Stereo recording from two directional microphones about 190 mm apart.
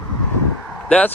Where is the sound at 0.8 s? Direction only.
5° left (ahead or behind).